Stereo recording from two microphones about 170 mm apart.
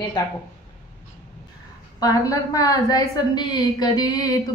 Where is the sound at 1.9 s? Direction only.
20° left (ahead or behind).